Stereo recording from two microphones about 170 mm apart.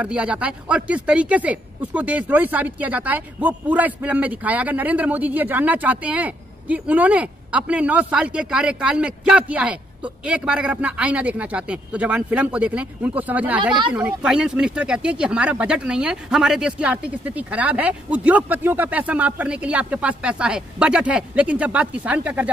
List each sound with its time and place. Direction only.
0.0 s speech: 5° right (ahead or behind)